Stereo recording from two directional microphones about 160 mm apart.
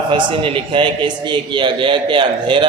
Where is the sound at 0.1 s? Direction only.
35° right (ahead or behind).